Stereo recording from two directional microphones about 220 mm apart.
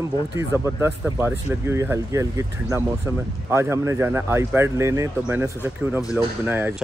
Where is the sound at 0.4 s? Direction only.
10° right (ahead or behind).